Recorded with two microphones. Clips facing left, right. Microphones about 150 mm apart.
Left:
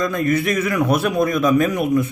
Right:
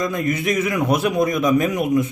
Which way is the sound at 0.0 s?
20° right (ahead or behind).